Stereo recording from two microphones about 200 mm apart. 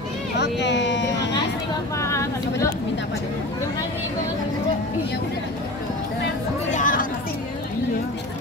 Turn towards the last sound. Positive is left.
turn(degrees=40)  # may be behind; listen again after turning